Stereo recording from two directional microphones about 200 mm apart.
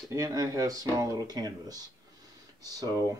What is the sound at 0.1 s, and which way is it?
Speech, 15° right (ahead or behind).